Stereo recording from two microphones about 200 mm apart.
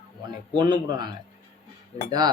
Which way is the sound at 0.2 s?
20° right (ahead or behind).